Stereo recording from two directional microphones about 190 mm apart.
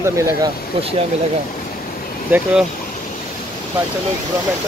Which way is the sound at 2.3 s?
5° right (ahead or behind).